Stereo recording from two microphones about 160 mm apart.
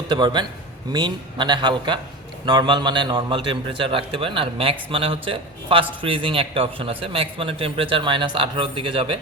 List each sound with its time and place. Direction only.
0.1 s a man's voice: 30° right (ahead or behind)